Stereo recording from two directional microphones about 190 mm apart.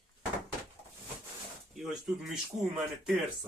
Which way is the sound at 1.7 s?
Centre (ahead or behind).